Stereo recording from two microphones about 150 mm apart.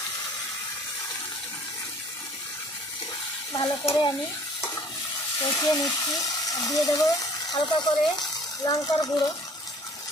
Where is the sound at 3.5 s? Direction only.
30° left (ahead or behind).